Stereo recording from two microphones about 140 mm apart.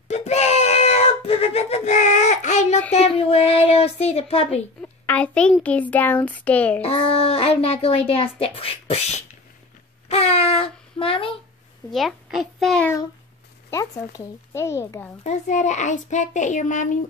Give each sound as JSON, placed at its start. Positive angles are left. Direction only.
{"t": 0.1, "sound": "a sound", "side_deg": 50}
{"t": 2.9, "sound": "speech", "side_deg": 50}
{"t": 5.0, "sound": "a child's voice", "side_deg": 10}
{"t": 6.8, "sound": "speech", "side_deg": 45}
{"t": 10.0, "sound": "speech", "side_deg": 45}
{"t": 11.9, "sound": "a child's voice", "side_deg": 0}
{"t": 13.7, "sound": "speech", "side_deg": 25}
{"t": 15.2, "sound": "a child's voice", "side_deg": 55}